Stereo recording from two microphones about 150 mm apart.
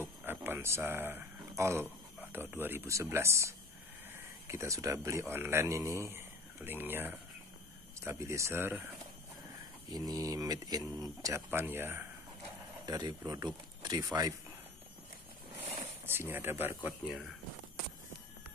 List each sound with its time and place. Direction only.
0.0 s speech: 10° right (ahead or behind)
9.8 s speech: 25° right (ahead or behind)
12.8 s speech: 25° right (ahead or behind)
16.1 s speech: 15° right (ahead or behind)